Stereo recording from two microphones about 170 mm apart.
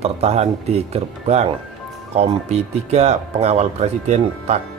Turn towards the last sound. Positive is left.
turn(degrees=-40)  # may be behind; listen again after turning